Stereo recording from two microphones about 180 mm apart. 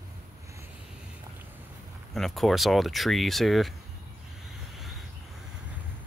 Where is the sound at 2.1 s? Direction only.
Centre (ahead or behind).